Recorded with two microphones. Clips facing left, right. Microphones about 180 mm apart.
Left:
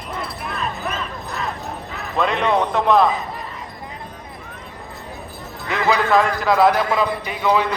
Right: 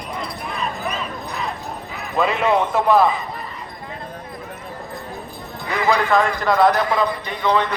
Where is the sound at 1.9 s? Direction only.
Centre (ahead or behind).